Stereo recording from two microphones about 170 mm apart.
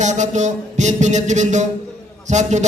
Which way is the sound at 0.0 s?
45° right (ahead or behind).